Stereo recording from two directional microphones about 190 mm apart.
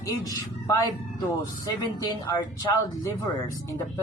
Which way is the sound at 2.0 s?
20° left (ahead or behind).